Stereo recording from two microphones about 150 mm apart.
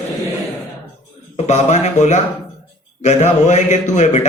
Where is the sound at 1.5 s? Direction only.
50° left (ahead or behind).